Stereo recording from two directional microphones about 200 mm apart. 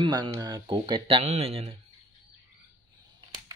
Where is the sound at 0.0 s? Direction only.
20° right (ahead or behind).